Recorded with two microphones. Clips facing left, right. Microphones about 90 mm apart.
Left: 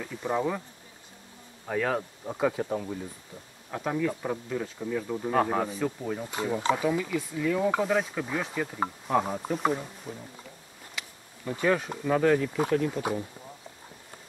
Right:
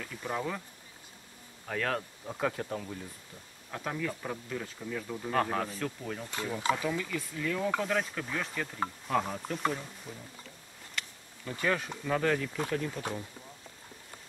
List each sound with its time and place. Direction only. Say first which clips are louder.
0.0 s speech: left 6 dB; 15° left (ahead or behind)
1.7 s speech: left 5 dB; 10° left (ahead or behind)
11.0 s a sound: even; 5° left (ahead or behind)
11.5 s speech: left 5 dB; 10° left (ahead or behind)